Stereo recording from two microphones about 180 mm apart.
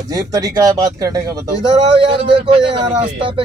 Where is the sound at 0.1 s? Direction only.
20° right (ahead or behind).